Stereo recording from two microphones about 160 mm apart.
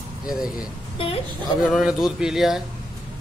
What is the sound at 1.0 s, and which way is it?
Speech, 35° left (ahead or behind).